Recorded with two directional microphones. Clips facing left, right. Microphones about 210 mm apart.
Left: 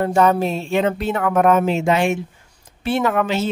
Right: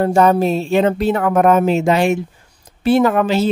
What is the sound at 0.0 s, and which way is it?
Speech, 35° right (ahead or behind).